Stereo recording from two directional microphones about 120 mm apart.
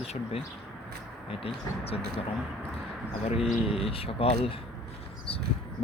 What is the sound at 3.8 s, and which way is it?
Speech, 50° left (ahead or behind).